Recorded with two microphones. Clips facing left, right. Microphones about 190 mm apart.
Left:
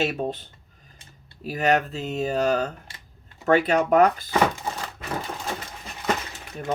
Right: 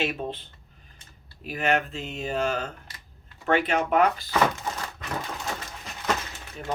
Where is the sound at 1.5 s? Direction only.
40° left (ahead or behind).